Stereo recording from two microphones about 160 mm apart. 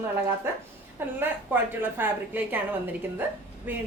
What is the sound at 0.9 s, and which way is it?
A woman's voice, 15° right (ahead or behind).